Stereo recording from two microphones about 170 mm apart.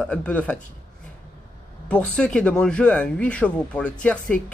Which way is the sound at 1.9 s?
5° left (ahead or behind).